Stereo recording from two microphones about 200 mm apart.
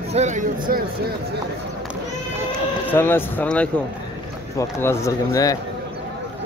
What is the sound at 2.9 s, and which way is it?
A man's voice, 10° left (ahead or behind).